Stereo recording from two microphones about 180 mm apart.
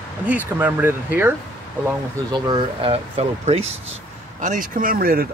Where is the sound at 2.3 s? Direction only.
25° right (ahead or behind).